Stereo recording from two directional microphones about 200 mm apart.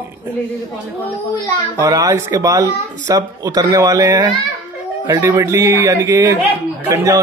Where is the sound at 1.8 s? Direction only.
20° right (ahead or behind).